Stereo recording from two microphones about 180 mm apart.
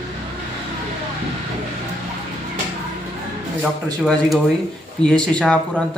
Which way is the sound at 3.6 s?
Centre (ahead or behind).